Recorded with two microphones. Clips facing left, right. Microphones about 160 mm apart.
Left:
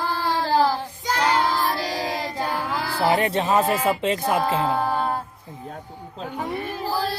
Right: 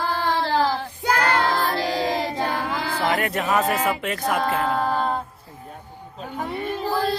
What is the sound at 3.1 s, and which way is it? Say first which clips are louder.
Speech: left 2 dB; 25° left (ahead or behind).